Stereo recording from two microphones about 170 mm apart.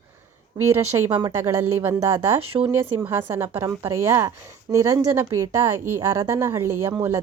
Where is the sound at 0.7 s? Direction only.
15° right (ahead or behind).